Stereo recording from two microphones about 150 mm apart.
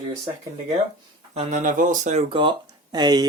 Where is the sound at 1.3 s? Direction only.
55° right (ahead or behind).